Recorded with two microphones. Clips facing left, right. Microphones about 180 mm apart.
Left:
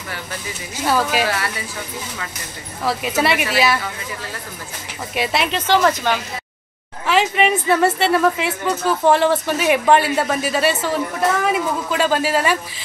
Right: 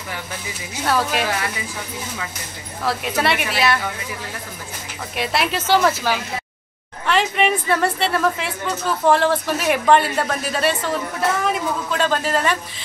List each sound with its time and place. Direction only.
0.8 s a woman's voice: centre (ahead or behind)
2.8 s a woman's voice: centre (ahead or behind)
5.1 s a woman's voice: centre (ahead or behind)